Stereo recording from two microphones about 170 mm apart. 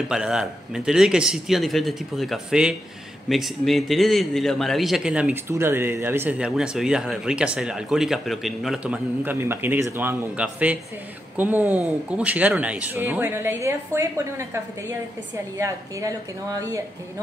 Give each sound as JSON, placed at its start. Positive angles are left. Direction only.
{"t": 0.1, "sound": "a man's voice", "side_deg": -5}
{"t": 15.5, "sound": "speech", "side_deg": -20}